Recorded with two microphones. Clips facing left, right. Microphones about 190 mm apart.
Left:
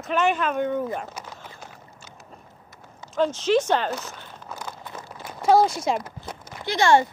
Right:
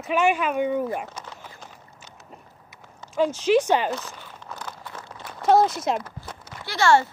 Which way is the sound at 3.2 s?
10° right (ahead or behind).